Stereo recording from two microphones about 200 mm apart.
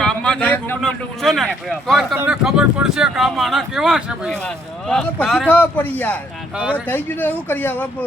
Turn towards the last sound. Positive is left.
turn(degrees=10)  # may be behind; listen again after turning